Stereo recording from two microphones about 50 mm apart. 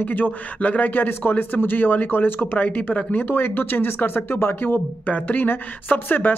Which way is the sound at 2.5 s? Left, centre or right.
Left.